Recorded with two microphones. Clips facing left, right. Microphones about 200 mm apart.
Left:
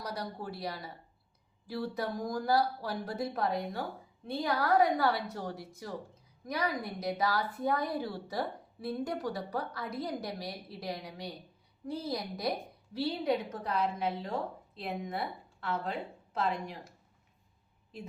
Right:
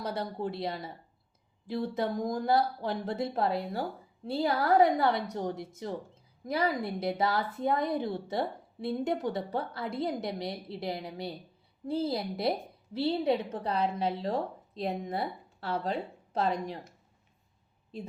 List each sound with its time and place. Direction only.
0.0 s a woman's voice: 25° right (ahead or behind)